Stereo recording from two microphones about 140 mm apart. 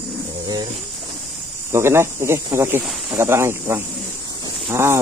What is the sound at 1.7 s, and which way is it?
Speech, 20° right (ahead or behind).